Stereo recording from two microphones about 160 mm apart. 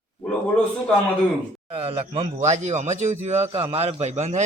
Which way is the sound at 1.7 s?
35° right (ahead or behind).